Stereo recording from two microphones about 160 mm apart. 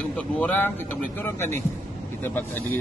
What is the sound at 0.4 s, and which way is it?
Speech, 10° left (ahead or behind).